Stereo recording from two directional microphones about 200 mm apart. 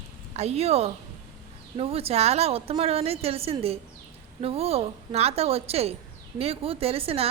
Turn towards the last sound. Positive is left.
turn(degrees=-30)  # may be behind; listen again after turning